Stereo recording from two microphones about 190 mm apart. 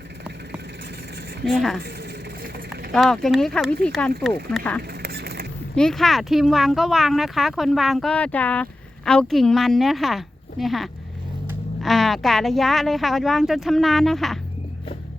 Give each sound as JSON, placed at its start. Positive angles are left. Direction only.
{"t": 1.5, "sound": "speech", "side_deg": 0}
{"t": 2.9, "sound": "speech", "side_deg": 5}
{"t": 4.8, "sound": "a sound", "side_deg": -55}
{"t": 5.7, "sound": "speech", "side_deg": 5}